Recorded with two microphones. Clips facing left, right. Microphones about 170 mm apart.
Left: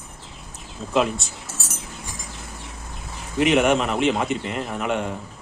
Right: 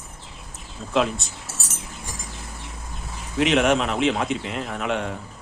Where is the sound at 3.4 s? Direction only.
Centre (ahead or behind).